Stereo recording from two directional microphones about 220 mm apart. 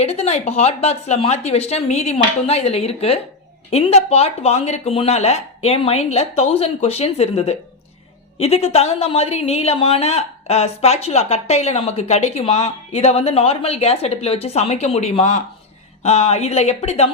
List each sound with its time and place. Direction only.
0.0 s speech: 30° left (ahead or behind)